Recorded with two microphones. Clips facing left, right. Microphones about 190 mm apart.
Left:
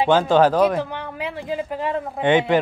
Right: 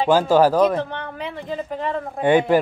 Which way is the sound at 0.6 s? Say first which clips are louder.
Right 1 dB; 10° left (ahead or behind).